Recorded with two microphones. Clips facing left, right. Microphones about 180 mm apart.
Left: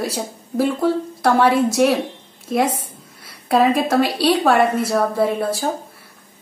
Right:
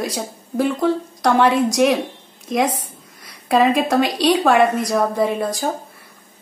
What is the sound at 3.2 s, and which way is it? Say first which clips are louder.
A woman's voice: even; centre (ahead or behind).